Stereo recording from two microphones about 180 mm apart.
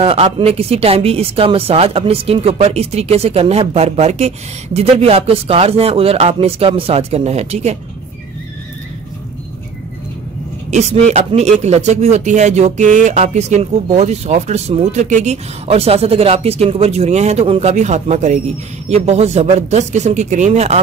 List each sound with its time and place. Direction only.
0.0 s speech: 35° right (ahead or behind)
10.7 s speech: 40° right (ahead or behind)